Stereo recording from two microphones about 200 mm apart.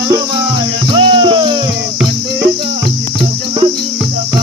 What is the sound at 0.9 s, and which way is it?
Music, 25° right (ahead or behind).